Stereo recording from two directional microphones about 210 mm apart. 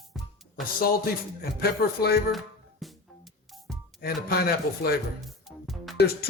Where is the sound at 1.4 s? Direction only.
45° left (ahead or behind).